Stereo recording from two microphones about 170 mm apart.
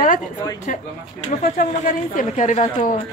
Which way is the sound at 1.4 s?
55° left (ahead or behind).